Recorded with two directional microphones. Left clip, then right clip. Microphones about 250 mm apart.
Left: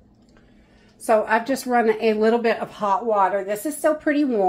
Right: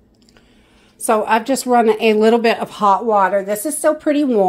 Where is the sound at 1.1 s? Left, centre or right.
Right.